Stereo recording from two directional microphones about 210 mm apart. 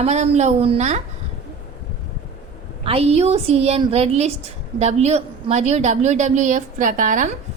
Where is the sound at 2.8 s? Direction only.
30° right (ahead or behind).